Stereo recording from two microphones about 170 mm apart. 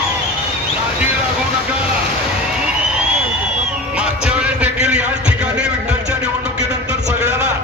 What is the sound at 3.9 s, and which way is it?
Music, 5° right (ahead or behind).